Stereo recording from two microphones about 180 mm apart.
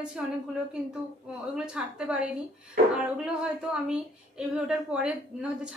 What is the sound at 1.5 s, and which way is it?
Speech, 5° right (ahead or behind).